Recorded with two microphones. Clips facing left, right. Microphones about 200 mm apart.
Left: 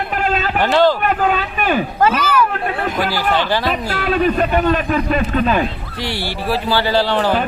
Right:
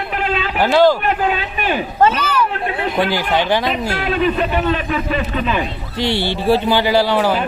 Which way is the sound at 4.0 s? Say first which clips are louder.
Left 2 dB; 45° left (ahead or behind).